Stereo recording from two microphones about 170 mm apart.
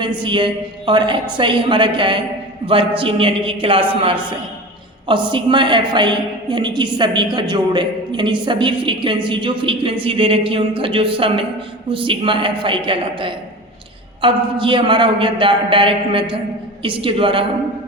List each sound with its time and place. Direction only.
0.2 s a woman's voice: 30° right (ahead or behind)